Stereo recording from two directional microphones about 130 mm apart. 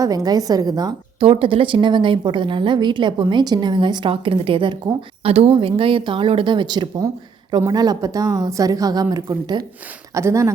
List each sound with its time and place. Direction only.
0.0 s a woman's voice: 30° right (ahead or behind)
1.2 s a woman's voice: 45° right (ahead or behind); by 10.5 s 20° right (ahead or behind)